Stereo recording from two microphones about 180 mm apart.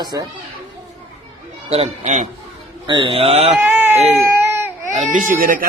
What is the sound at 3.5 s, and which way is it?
Baby cry, 5° right (ahead or behind).